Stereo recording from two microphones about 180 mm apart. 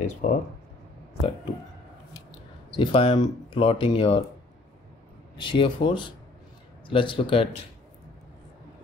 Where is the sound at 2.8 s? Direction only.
30° left (ahead or behind).